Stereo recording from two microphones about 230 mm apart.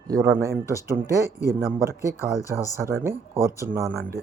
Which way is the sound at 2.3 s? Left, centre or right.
Centre.